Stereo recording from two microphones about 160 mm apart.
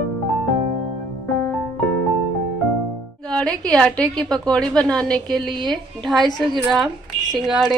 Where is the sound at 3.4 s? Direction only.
5° left (ahead or behind).